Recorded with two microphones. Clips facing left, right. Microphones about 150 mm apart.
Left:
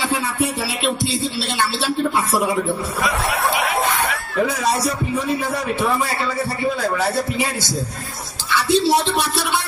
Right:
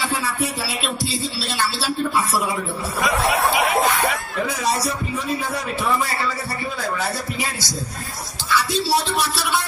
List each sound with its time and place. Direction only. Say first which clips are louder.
1.0 s speech: left 3 dB; 25° left (ahead or behind)
8.6 s speech: left 5 dB; 20° left (ahead or behind)